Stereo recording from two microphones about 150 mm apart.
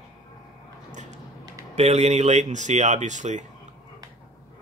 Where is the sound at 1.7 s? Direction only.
45° right (ahead or behind).